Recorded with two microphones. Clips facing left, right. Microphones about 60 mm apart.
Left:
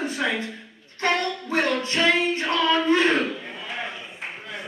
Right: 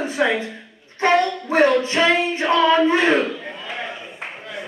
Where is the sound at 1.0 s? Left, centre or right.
Right.